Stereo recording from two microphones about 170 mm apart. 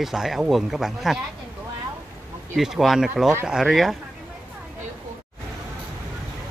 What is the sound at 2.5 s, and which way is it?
Speech, centre (ahead or behind).